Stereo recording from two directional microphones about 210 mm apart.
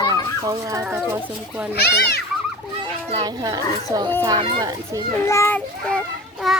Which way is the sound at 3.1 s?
20° right (ahead or behind).